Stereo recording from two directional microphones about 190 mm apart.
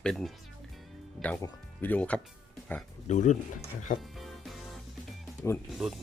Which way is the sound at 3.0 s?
40° left (ahead or behind).